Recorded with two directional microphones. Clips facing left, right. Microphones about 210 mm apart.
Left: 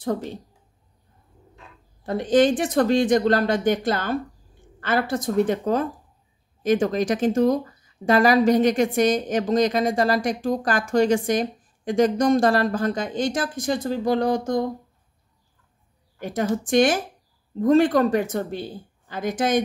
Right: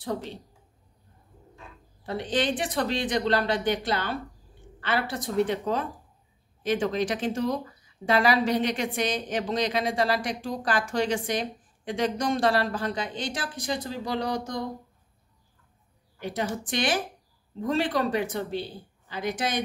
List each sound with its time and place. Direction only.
0.0 s speech: 45° left (ahead or behind)
2.0 s speech: 45° left (ahead or behind)
16.2 s speech: 45° left (ahead or behind)